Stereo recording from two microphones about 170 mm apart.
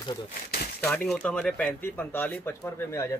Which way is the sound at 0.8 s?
5° left (ahead or behind).